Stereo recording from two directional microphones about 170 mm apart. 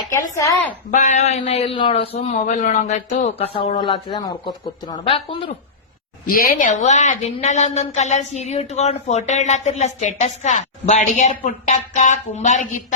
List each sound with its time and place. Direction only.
0.1 s a woman's voice: 20° left (ahead or behind)
0.9 s a man's voice: 45° left (ahead or behind)
6.2 s a woman's voice: 60° left (ahead or behind)